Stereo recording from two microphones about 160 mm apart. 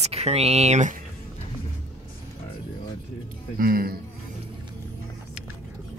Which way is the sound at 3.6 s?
65° right (ahead or behind).